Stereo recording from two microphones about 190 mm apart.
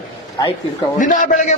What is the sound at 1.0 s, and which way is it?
Speech, 45° left (ahead or behind).